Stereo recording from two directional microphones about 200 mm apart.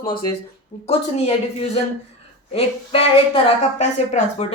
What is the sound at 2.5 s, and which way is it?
Speech, 30° left (ahead or behind).